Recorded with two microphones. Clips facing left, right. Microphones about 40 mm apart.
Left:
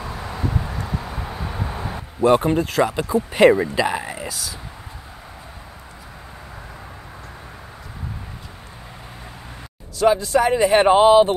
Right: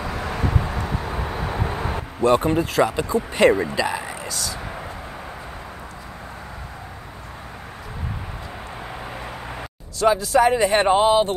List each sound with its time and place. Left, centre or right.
0.0 s vehicle: right
2.2 s speech: centre
9.9 s speech: centre
10.9 s speech: centre